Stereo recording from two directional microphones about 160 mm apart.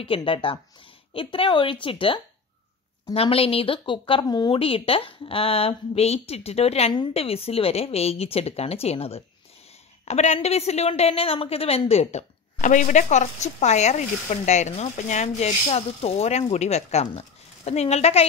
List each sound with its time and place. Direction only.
0.0 s a woman's voice: 35° left (ahead or behind)